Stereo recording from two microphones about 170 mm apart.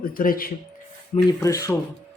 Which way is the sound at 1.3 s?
20° left (ahead or behind).